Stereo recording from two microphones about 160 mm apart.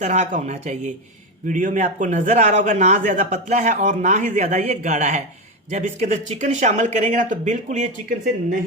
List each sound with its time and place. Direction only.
0.0 s a man's voice: 50° right (ahead or behind)